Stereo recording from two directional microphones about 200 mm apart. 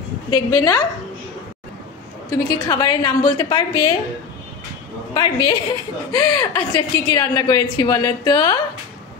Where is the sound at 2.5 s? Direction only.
20° left (ahead or behind).